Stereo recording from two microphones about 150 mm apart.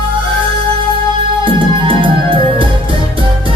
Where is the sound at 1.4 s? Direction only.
35° right (ahead or behind).